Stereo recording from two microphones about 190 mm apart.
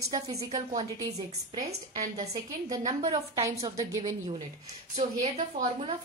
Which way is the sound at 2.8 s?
30° right (ahead or behind).